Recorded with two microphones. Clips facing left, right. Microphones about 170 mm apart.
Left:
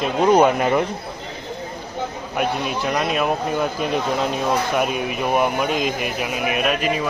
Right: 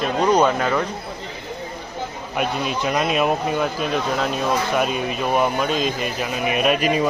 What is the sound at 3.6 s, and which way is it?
Speech, 10° left (ahead or behind).